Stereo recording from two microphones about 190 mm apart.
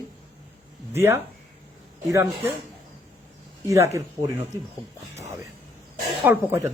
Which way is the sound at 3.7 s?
15° right (ahead or behind).